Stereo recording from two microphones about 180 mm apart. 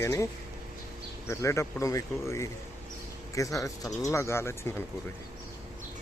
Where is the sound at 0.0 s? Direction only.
15° left (ahead or behind).